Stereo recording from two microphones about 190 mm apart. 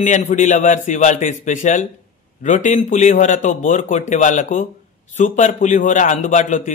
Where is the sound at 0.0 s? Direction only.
40° left (ahead or behind).